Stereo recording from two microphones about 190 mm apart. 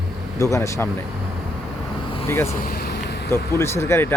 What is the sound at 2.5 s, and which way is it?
Vehicle, 50° left (ahead or behind).